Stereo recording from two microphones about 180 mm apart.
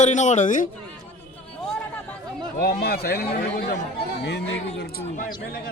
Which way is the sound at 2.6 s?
60° left (ahead or behind).